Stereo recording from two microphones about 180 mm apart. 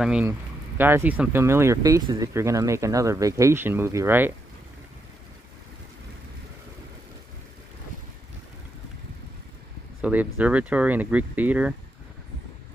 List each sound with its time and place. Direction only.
0.0 s speech: 10° right (ahead or behind)
10.0 s speech: 10° right (ahead or behind)